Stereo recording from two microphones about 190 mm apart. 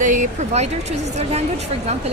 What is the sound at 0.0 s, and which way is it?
Speech, 40° right (ahead or behind).